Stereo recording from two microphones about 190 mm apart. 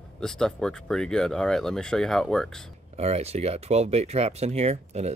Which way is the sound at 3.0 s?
35° right (ahead or behind).